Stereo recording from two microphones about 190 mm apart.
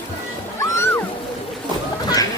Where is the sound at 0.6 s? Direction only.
15° left (ahead or behind).